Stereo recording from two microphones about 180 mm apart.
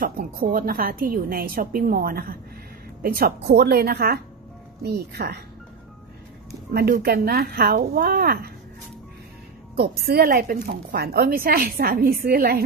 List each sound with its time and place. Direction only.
0.0 s a woman's voice: 50° right (ahead or behind)
6.7 s a woman's voice: 60° right (ahead or behind)
9.8 s a woman's voice: 60° right (ahead or behind)